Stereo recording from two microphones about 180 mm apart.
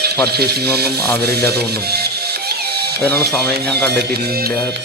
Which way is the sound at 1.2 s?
60° right (ahead or behind).